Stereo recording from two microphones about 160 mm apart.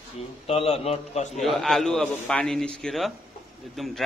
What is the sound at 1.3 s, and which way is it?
Speech, centre (ahead or behind).